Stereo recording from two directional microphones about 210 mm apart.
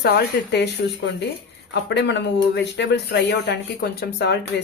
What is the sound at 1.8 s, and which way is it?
Speech, 55° left (ahead or behind).